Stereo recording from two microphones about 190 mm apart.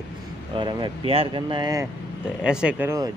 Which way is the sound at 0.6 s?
25° right (ahead or behind).